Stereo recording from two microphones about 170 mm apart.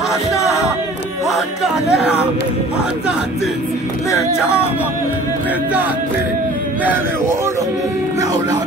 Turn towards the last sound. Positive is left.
turn(degrees=-15)  # may be behind; listen again after turning